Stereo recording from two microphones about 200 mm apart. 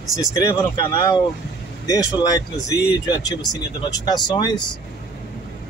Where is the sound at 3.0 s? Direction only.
20° left (ahead or behind).